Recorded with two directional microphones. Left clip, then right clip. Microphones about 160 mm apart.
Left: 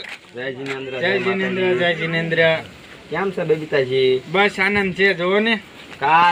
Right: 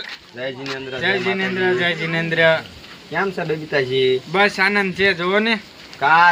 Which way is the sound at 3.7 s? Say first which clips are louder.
Right 2 dB; 20° right (ahead or behind).